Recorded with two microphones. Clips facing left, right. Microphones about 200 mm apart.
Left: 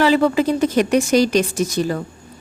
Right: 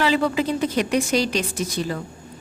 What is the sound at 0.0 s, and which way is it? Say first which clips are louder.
A woman's voice: left 5 dB; 45° left (ahead or behind).